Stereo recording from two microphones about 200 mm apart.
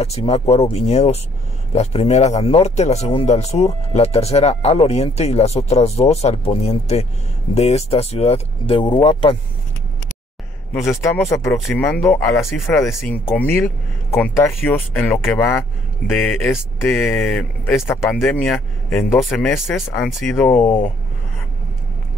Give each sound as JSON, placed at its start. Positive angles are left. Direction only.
{"t": 0.0, "sound": "speech", "side_deg": 30}
{"t": 10.7, "sound": "speech", "side_deg": 15}
{"t": 16.1, "sound": "speech", "side_deg": 0}
{"t": 16.9, "sound": "speech", "side_deg": 10}